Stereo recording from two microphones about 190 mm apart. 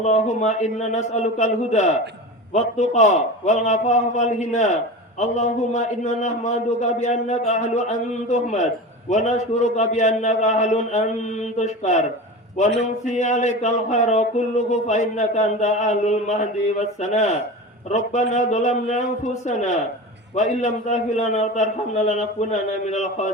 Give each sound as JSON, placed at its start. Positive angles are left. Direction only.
{"t": 0.0, "sound": "a man's voice", "side_deg": 40}
{"t": 13.1, "sound": "a man's voice", "side_deg": 40}